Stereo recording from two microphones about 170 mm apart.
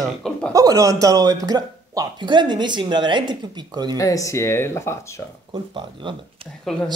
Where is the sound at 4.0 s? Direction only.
20° left (ahead or behind).